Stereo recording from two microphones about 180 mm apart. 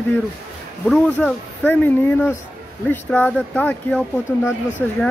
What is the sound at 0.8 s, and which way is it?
Speech, 5° left (ahead or behind).